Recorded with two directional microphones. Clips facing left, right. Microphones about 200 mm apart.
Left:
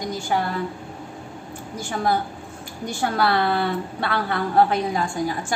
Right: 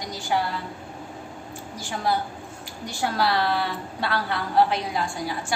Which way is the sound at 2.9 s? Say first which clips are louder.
Left 3 dB; 55° left (ahead or behind).